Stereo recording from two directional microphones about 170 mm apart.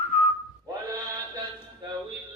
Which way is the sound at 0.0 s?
45° left (ahead or behind).